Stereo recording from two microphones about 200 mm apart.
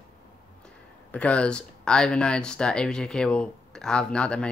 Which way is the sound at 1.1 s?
5° left (ahead or behind).